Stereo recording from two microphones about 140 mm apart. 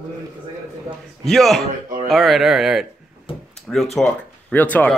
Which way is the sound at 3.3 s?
40° left (ahead or behind).